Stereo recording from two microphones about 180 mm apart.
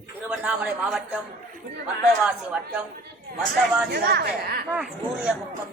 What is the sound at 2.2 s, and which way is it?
Speech, 5° right (ahead or behind).